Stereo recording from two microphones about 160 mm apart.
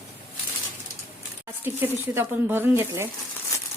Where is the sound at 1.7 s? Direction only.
15° right (ahead or behind).